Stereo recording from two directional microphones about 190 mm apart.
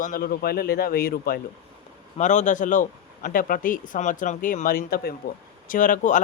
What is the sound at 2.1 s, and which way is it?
Speech, 40° left (ahead or behind).